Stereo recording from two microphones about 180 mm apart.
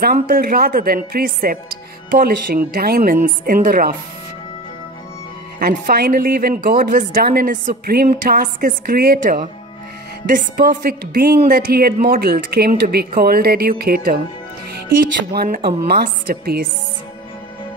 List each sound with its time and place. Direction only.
0.0 s a woman's voice: 55° right (ahead or behind)
5.6 s a woman's voice: 55° right (ahead or behind)
15.3 s a woman's voice: 55° right (ahead or behind)